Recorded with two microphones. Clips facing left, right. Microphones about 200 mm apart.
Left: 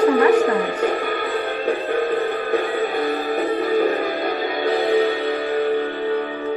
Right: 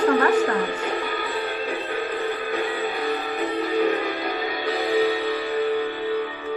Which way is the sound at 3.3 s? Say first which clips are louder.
Left 5 dB; 50° left (ahead or behind).